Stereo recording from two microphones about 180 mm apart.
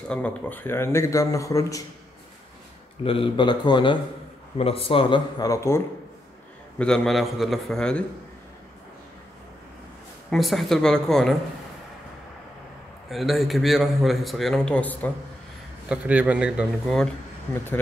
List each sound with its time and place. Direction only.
0.1 s a man's voice: 10° left (ahead or behind)
3.0 s speech: 30° left (ahead or behind)
6.8 s a man's voice: centre (ahead or behind)
10.3 s a man's voice: centre (ahead or behind)
13.1 s a man's voice: centre (ahead or behind)
15.9 s a man's voice: 10° right (ahead or behind)